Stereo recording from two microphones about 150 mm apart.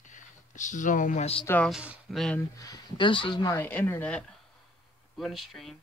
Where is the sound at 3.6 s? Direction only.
10° left (ahead or behind).